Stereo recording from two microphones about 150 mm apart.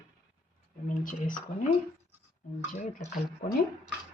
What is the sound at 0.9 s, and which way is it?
Speech, 65° left (ahead or behind).